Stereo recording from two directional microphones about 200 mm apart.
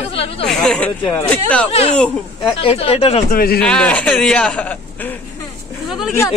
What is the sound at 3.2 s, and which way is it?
Speech, 50° left (ahead or behind).